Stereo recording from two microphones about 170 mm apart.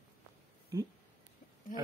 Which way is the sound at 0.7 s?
20° right (ahead or behind).